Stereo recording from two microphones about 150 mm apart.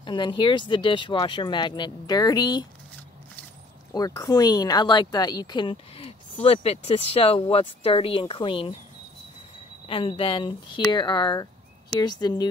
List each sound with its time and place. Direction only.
0.0 s speech: 30° left (ahead or behind)
3.9 s speech: 25° left (ahead or behind)
9.8 s speech: 35° left (ahead or behind)